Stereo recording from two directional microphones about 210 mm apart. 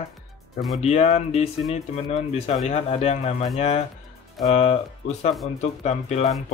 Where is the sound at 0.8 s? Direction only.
30° left (ahead or behind).